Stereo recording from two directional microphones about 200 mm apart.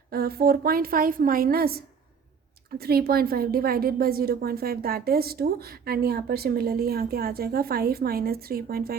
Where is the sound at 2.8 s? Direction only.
50° right (ahead or behind).